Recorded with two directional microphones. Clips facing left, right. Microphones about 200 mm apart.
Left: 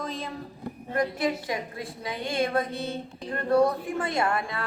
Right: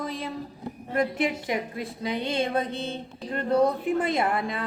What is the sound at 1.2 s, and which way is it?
A woman's voice, 20° right (ahead or behind).